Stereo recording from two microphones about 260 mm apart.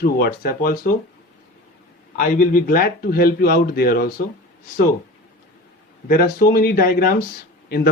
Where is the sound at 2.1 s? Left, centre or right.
Left.